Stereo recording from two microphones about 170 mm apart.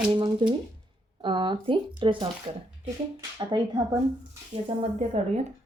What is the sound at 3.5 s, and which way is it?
Speech, 25° right (ahead or behind).